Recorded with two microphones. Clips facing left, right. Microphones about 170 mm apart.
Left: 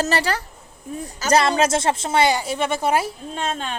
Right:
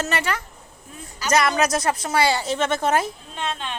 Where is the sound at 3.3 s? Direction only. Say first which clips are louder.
Left 3 dB; 45° left (ahead or behind).